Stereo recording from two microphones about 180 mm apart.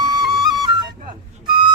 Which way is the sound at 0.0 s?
20° right (ahead or behind).